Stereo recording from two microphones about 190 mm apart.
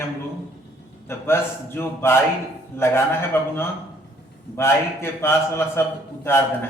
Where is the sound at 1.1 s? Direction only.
15° left (ahead or behind).